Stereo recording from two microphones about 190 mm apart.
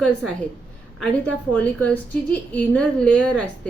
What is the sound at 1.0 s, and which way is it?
A woman's voice, 5° left (ahead or behind).